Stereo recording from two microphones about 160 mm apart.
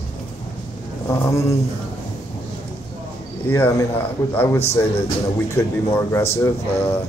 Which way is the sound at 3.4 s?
15° left (ahead or behind).